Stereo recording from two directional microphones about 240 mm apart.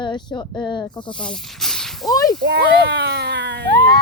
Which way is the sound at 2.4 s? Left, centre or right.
Right.